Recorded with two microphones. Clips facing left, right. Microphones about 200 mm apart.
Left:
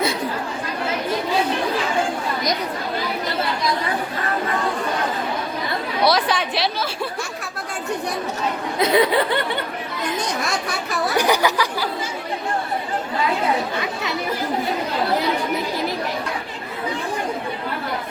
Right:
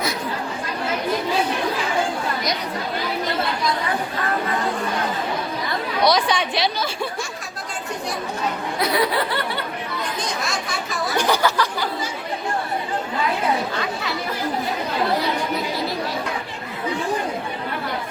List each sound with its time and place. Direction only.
6.1 s a woman's voice: 5° left (ahead or behind)
8.8 s speech: 25° left (ahead or behind)
11.2 s a sound: 15° left (ahead or behind)